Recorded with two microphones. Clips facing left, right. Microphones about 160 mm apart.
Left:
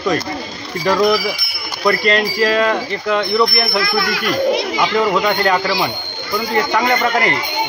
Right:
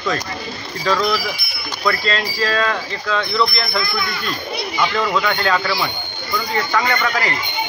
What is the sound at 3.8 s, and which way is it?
Speech, 80° left.